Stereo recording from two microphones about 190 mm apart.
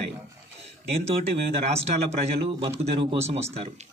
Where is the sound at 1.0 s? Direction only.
35° right (ahead or behind).